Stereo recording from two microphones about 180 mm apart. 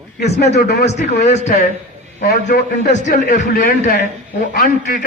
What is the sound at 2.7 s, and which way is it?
A man's voice, 45° left (ahead or behind).